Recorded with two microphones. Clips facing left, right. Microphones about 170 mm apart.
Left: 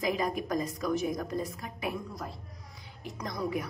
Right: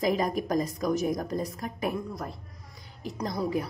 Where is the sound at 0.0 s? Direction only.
40° right (ahead or behind).